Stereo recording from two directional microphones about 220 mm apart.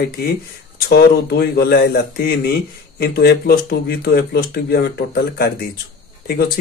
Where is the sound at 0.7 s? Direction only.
45° left (ahead or behind).